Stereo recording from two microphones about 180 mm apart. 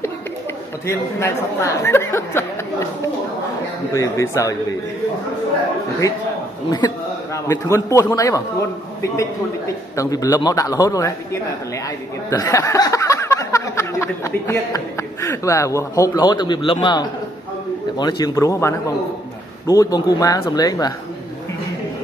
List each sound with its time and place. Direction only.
0.8 s speech: 15° left (ahead or behind)
3.9 s speech: 15° left (ahead or behind)
7.4 s speech: 15° left (ahead or behind)
12.3 s speech: 20° left (ahead or behind)